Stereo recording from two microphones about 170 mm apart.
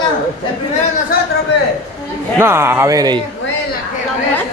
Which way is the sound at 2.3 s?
15° right (ahead or behind).